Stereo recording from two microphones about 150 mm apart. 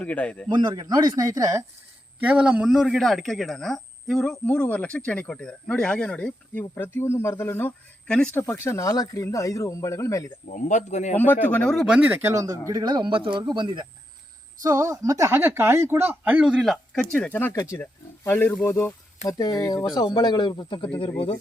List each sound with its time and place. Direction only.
0.0 s speech: 10° left (ahead or behind)
0.4 s speech: 30° right (ahead or behind)
2.2 s speech: 5° right (ahead or behind); by 10.2 s 20° left (ahead or behind)
10.5 s speech: 55° left (ahead or behind)
11.4 s speech: 10° left (ahead or behind); by 20.8 s 30° left (ahead or behind)